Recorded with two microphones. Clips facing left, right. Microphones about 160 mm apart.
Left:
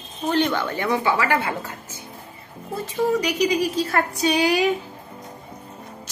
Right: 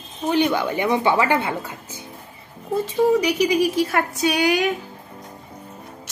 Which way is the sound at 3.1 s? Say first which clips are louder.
Right 1 dB; 10° right (ahead or behind).